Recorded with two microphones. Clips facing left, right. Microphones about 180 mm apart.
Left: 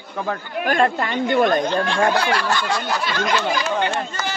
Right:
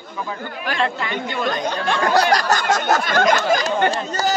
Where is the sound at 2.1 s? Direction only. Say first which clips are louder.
Right 4 dB; 40° right (ahead or behind).